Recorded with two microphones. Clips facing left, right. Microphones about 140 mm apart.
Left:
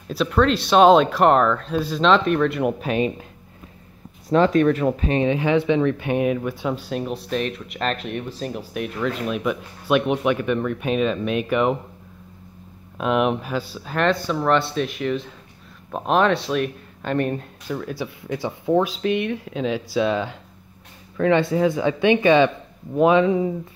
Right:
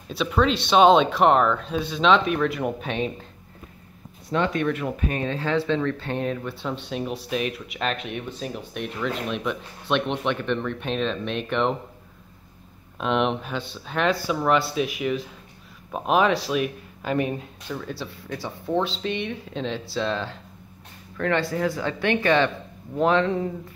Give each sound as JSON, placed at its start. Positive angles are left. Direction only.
{"t": 0.1, "sound": "speech", "side_deg": 0}
{"t": 4.3, "sound": "speech", "side_deg": 40}
{"t": 12.9, "sound": "speech", "side_deg": 5}
{"t": 17.9, "sound": "speech", "side_deg": 15}